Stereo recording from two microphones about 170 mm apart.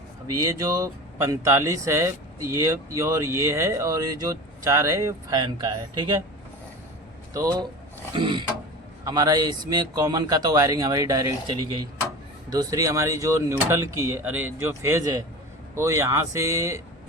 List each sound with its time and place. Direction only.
0.3 s speech: 20° right (ahead or behind)
7.3 s a man's voice: 25° right (ahead or behind)